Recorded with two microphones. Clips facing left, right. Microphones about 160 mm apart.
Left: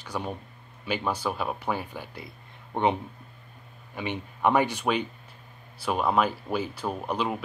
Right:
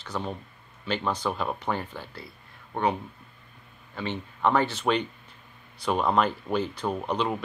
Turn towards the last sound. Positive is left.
turn(degrees=5)  # may be behind; listen again after turning